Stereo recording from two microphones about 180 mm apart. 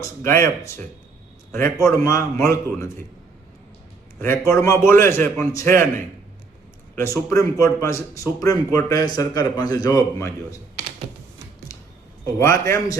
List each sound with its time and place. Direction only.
0.0 s a man's voice: 15° left (ahead or behind)
4.2 s a man's voice: 15° left (ahead or behind)
12.2 s a man's voice: 15° left (ahead or behind)